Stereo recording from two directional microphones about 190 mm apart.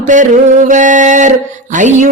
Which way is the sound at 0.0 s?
40° right (ahead or behind).